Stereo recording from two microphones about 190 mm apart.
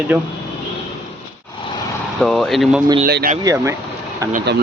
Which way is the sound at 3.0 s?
50° right (ahead or behind).